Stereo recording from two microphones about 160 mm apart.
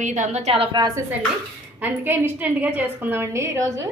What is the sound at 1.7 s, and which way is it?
A woman's voice, 10° right (ahead or behind).